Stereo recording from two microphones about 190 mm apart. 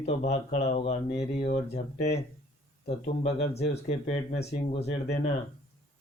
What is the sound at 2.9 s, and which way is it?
Speech, 35° left (ahead or behind).